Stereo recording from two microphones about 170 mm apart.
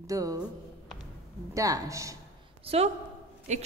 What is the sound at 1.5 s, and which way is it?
Speech, 20° right (ahead or behind).